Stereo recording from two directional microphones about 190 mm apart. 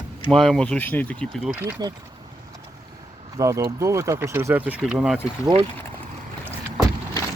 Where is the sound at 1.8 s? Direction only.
20° right (ahead or behind).